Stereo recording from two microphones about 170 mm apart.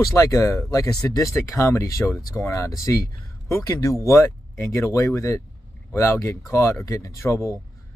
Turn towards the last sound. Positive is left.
turn(degrees=15)  # may be behind; listen again after turning